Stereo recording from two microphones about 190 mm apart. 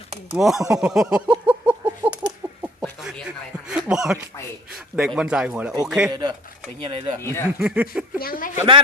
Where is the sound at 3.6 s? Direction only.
5° right (ahead or behind).